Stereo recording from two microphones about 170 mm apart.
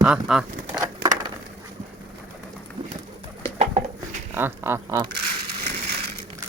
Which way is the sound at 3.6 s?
40° right (ahead or behind).